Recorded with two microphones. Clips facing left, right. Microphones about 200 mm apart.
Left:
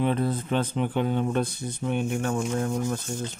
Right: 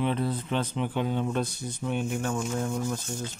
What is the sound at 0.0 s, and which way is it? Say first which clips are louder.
Speech: left 3 dB; 50° left (ahead or behind).